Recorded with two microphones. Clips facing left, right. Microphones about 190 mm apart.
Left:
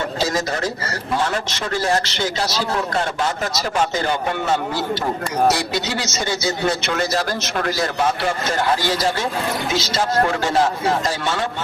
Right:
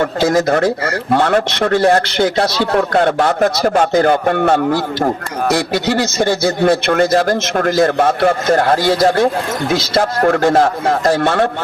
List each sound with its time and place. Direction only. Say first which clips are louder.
0.0 s a man's voice: right 8 dB; 55° right (ahead or behind)